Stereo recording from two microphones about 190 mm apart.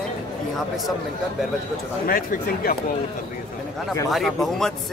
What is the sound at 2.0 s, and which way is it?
Speech, 50° left (ahead or behind).